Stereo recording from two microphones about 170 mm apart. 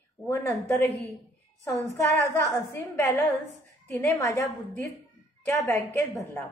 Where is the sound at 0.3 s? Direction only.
15° left (ahead or behind).